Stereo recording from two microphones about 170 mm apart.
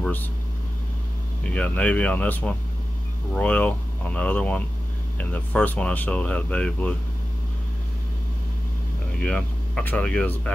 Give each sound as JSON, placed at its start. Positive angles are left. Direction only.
{"t": 0.0, "sound": "speech", "side_deg": 10}
{"t": 1.4, "sound": "speech", "side_deg": 10}
{"t": 9.2, "sound": "speech", "side_deg": 10}